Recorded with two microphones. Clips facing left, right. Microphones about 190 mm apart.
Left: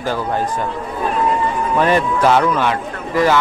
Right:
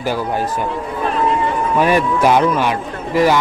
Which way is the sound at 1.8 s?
15° right (ahead or behind).